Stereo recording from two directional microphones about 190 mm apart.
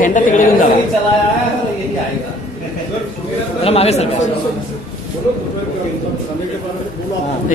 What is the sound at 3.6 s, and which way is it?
Speech, 35° left (ahead or behind).